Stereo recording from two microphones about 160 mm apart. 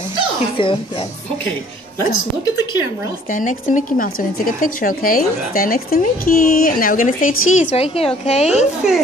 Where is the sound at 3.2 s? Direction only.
55° left (ahead or behind).